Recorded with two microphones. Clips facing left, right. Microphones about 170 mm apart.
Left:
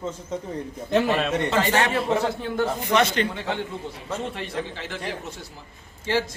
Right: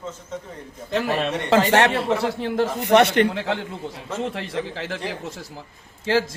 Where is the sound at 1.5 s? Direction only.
90° right.